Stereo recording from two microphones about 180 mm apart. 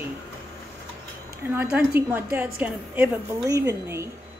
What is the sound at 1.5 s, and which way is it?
A woman's voice, 10° right (ahead or behind).